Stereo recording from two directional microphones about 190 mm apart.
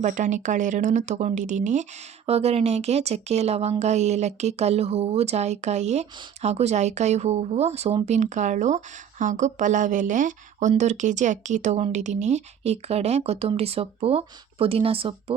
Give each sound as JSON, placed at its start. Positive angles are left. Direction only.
{"t": 0.0, "sound": "speech", "side_deg": -40}